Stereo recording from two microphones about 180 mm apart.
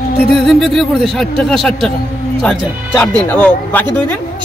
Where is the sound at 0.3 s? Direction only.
Centre (ahead or behind).